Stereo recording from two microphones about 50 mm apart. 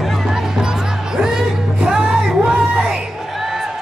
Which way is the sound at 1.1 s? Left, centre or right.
Centre.